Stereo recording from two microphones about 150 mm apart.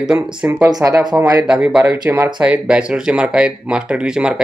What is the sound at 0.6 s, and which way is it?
Speech, 25° right (ahead or behind).